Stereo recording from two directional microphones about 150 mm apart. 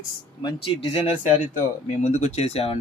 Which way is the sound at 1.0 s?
55° left (ahead or behind).